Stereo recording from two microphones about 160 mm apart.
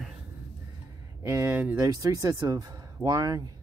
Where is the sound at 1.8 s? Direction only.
20° right (ahead or behind).